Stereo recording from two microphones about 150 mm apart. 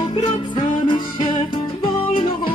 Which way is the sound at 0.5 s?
30° left (ahead or behind).